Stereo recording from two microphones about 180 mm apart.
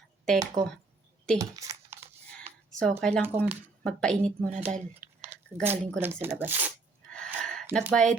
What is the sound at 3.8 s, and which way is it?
Speech, 5° left (ahead or behind).